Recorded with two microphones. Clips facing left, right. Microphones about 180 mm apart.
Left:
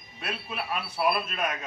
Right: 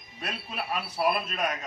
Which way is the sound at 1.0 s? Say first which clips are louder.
Even; 35° right (ahead or behind).